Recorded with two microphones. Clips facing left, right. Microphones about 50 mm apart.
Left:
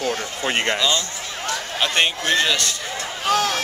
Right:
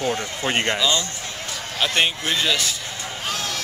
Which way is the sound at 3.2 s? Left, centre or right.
Left.